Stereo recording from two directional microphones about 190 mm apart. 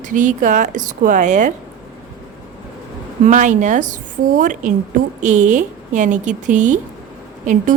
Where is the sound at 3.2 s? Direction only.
40° right (ahead or behind).